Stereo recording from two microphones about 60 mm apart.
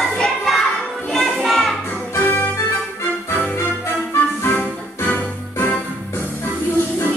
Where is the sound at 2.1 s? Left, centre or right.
Left.